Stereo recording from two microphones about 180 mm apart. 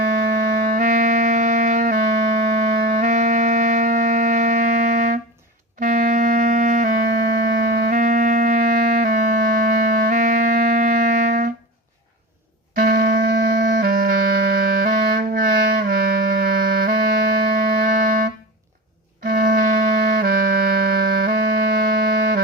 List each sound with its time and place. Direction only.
0.1 s music: 60° right (ahead or behind)
12.7 s clarinet: 55° right (ahead or behind)
19.2 s music: 55° right (ahead or behind)